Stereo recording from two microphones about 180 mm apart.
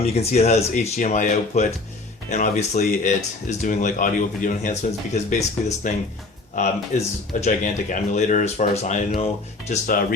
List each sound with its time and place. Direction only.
0.0 s speech: 35° left (ahead or behind)
7.4 s speech: 40° left (ahead or behind)